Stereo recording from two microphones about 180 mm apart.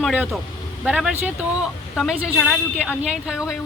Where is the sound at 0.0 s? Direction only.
Centre (ahead or behind).